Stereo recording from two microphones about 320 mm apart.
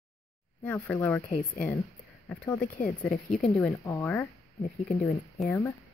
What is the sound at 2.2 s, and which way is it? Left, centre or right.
Speech, centre.